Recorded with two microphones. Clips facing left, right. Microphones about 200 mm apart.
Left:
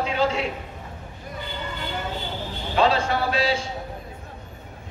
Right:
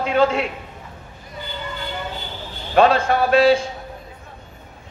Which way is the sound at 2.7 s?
55° right (ahead or behind).